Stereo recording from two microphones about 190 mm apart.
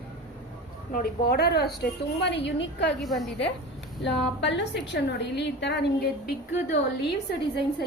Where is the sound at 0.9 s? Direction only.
55° left (ahead or behind).